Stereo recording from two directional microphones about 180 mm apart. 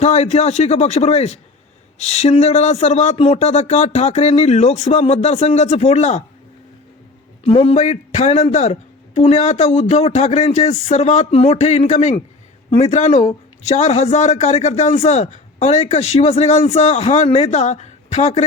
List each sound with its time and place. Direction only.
0.0 s a man's voice: 35° left (ahead or behind)
7.4 s a man's voice: 30° left (ahead or behind)